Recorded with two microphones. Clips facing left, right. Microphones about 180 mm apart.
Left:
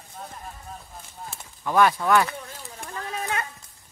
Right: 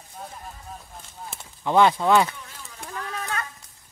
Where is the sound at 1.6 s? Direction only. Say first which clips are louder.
Right 2 dB; 20° right (ahead or behind).